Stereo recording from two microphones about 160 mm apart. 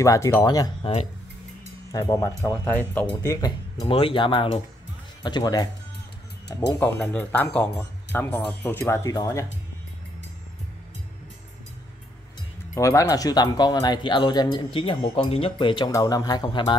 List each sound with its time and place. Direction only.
0.0 s speech: 20° left (ahead or behind)
1.9 s speech: 25° left (ahead or behind)
6.8 s speech: 10° left (ahead or behind)
12.7 s speech: 20° left (ahead or behind)